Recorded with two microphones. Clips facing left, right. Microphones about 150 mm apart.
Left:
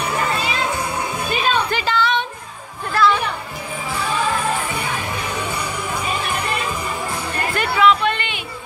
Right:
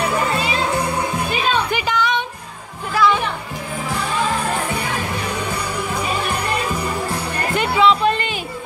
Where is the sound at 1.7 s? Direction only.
15° right (ahead or behind).